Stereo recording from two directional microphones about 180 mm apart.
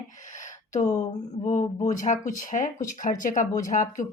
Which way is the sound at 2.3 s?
45° left (ahead or behind).